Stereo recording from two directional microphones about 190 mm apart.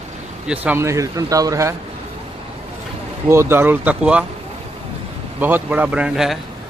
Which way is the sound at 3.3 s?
10° right (ahead or behind).